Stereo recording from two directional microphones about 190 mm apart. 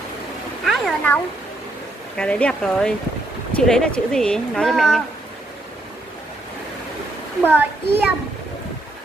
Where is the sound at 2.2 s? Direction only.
5° left (ahead or behind).